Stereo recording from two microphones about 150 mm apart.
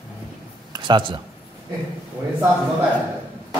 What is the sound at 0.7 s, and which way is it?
Speech, 30° right (ahead or behind).